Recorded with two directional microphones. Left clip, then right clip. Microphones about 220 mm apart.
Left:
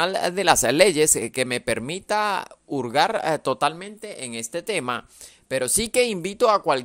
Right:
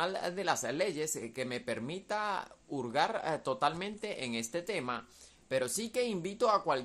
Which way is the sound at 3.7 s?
15° left (ahead or behind).